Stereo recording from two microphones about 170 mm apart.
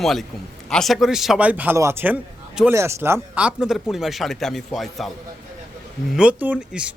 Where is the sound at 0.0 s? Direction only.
Centre (ahead or behind).